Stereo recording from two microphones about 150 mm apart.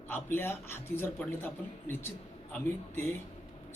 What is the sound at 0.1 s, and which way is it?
Speech, 15° left (ahead or behind).